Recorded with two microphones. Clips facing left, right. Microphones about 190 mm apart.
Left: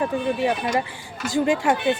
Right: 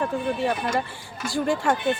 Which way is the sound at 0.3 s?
15° left (ahead or behind).